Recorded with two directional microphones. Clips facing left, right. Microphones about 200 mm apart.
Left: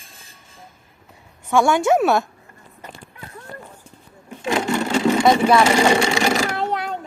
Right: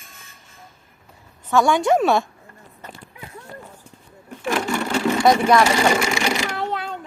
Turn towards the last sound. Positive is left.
turn(degrees=15)  # may be behind; listen again after turning